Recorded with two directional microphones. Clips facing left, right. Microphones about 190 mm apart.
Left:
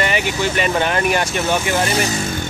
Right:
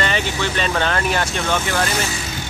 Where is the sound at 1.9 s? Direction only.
40° left (ahead or behind).